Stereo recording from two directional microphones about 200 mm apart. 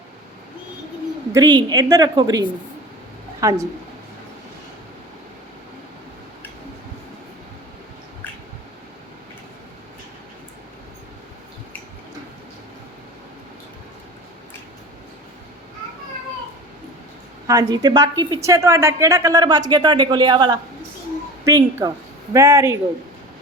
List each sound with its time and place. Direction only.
1.3 s a woman's voice: 20° right (ahead or behind)
17.4 s a woman's voice: 20° right (ahead or behind)